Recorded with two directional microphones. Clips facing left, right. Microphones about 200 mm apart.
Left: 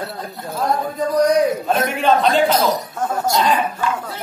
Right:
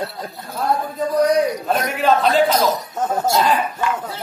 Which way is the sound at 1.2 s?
Centre (ahead or behind).